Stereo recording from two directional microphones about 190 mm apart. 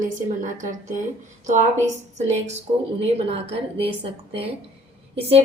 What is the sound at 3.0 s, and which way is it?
A woman's voice, 30° right (ahead or behind).